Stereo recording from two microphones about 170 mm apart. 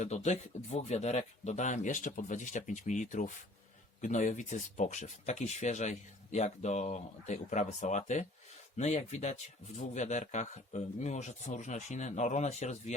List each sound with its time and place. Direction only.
0.0 s speech: 45° left (ahead or behind)